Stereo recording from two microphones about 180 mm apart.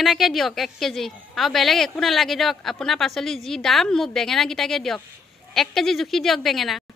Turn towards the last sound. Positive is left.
turn(degrees=0)  # may be behind; listen again after turning